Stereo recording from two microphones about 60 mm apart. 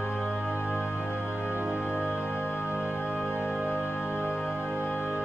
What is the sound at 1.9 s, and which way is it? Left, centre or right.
Music, left.